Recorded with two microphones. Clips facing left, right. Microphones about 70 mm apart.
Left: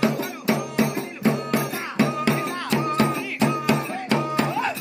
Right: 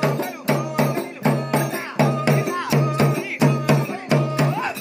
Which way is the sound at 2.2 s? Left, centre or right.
Centre.